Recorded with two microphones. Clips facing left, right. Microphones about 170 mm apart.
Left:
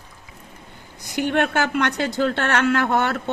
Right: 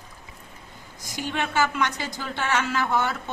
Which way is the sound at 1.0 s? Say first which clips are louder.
Left 8 dB; 65° left (ahead or behind).